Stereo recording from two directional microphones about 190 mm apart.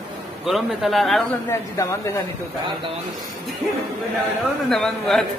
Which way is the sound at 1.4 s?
15° left (ahead or behind).